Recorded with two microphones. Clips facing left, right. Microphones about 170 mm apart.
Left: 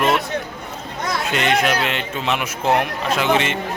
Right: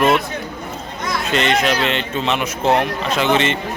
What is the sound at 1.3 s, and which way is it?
A man's voice, 10° left (ahead or behind).